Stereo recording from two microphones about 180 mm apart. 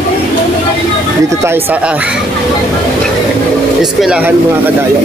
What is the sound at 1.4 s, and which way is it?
Speech, 10° right (ahead or behind).